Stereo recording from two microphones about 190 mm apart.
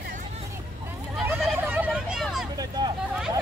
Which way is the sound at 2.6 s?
20° right (ahead or behind).